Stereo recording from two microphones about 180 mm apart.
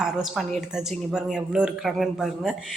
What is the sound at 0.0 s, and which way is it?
Speech, centre (ahead or behind).